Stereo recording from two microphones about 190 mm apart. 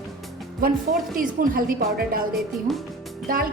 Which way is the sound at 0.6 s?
50° right (ahead or behind).